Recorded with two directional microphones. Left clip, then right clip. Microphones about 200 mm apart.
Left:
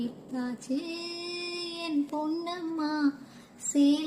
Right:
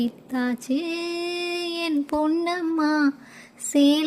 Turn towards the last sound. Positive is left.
turn(degrees=-40)  # may be behind; listen again after turning